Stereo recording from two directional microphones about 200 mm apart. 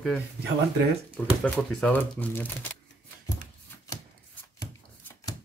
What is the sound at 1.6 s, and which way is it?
Speech, 5° left (ahead or behind).